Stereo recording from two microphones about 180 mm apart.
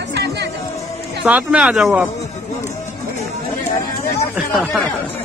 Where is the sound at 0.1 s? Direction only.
65° right (ahead or behind).